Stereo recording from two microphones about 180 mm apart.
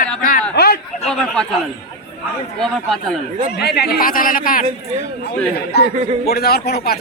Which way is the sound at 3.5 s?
60° left (ahead or behind).